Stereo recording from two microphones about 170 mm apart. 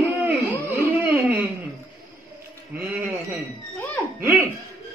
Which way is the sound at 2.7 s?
10° right (ahead or behind).